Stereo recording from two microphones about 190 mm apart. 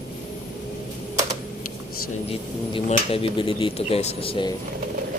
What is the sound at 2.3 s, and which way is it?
Speech, 30° left (ahead or behind).